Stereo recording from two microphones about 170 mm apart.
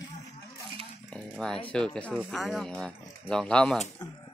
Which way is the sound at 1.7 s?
5° left (ahead or behind).